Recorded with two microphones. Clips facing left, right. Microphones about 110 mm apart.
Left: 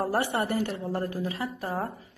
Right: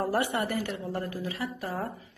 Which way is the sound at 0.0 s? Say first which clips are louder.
Left 1 dB; 30° left (ahead or behind).